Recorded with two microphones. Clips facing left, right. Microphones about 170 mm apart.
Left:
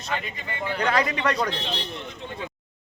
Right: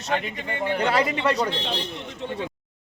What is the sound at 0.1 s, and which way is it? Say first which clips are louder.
Speech: right 4 dB; 60° right (ahead or behind).